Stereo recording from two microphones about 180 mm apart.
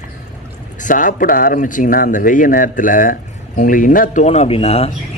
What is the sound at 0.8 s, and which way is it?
Speech, 50° left (ahead or behind).